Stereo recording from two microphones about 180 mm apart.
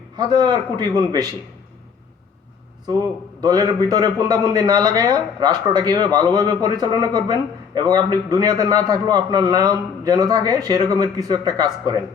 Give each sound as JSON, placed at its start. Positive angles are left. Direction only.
{"t": 0.2, "sound": "speech", "side_deg": -25}
{"t": 3.4, "sound": "speech", "side_deg": -20}